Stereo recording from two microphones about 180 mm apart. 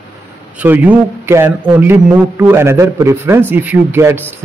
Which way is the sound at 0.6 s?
10° right (ahead or behind).